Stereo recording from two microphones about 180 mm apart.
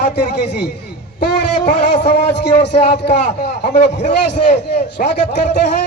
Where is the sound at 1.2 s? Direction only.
70° left (ahead or behind).